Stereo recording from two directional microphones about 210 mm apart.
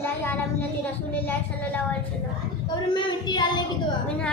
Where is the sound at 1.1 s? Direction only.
10° left (ahead or behind).